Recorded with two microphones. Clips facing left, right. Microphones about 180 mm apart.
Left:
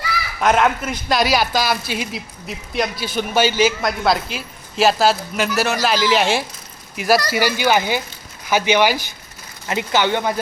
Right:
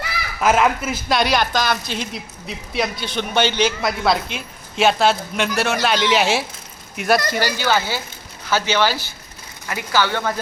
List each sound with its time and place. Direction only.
0.3 s speech: centre (ahead or behind); by 10.3 s 20° left (ahead or behind)